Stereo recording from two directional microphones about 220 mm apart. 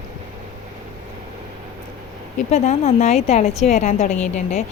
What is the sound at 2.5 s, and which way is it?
A woman's voice, 30° left (ahead or behind).